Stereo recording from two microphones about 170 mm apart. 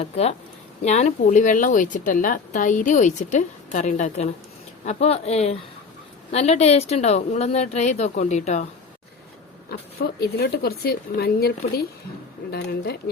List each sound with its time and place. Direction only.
0.0 s a woman's voice: 40° left (ahead or behind)
10.2 s speech: 70° left (ahead or behind)